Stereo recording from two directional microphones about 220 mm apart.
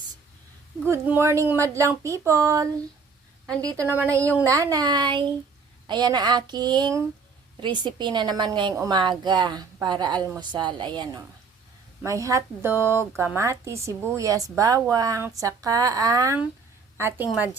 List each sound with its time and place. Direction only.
0.9 s a woman's voice: 10° right (ahead or behind)